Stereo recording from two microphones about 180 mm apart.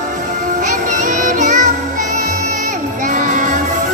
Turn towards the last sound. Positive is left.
turn(degrees=-45)  # may be behind; listen again after turning